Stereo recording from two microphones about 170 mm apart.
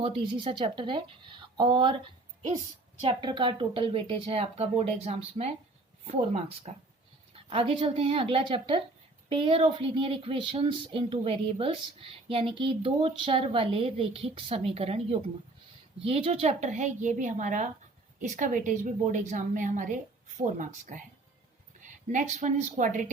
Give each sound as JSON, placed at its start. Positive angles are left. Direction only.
{"t": 0.0, "sound": "speech", "side_deg": -30}
{"t": 3.0, "sound": "a woman's voice", "side_deg": -30}